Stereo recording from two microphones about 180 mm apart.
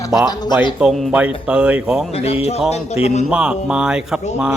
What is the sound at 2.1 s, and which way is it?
Speech, 35° left (ahead or behind).